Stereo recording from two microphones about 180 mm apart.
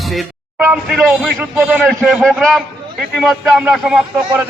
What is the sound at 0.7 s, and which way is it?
A man's voice, 5° right (ahead or behind).